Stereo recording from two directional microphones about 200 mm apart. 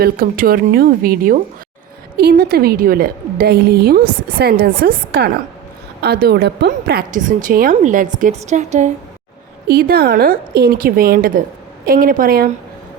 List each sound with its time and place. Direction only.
0.0 s a woman's voice: 45° right (ahead or behind)
9.6 s a woman's voice: 50° right (ahead or behind)